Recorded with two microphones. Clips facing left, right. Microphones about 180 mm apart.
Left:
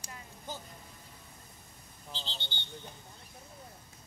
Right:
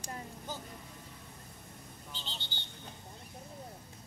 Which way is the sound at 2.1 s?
30° left (ahead or behind).